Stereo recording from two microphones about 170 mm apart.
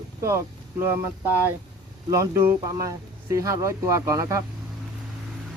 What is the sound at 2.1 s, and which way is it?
Speech, 15° right (ahead or behind).